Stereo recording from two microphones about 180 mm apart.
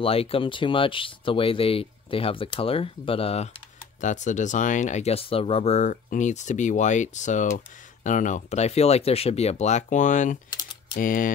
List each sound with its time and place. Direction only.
0.0 s speech: 30° left (ahead or behind)
4.0 s speech: 45° left (ahead or behind)